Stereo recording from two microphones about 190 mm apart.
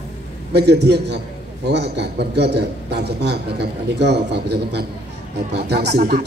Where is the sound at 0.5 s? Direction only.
60° right (ahead or behind).